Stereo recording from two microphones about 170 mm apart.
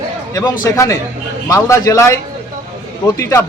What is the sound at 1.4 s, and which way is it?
Speech, 20° left (ahead or behind).